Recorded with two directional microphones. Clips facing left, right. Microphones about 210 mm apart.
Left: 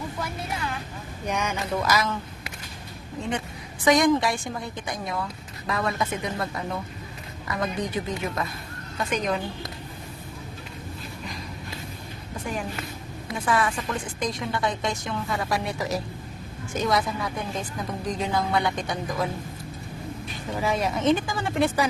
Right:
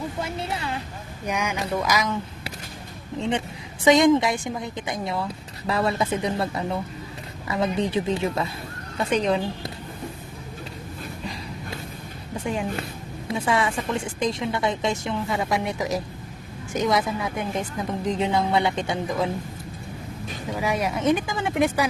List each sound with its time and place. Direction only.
0.2 s a woman's voice: 25° right (ahead or behind)
1.3 s speech: 10° right (ahead or behind)
3.2 s a woman's voice: 25° right (ahead or behind)
12.5 s a woman's voice: 25° right (ahead or behind)
20.5 s speech: 10° right (ahead or behind)